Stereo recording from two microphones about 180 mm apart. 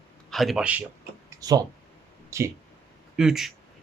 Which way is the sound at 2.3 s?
15° right (ahead or behind).